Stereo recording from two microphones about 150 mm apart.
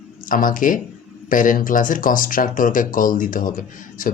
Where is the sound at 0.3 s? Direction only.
65° left (ahead or behind).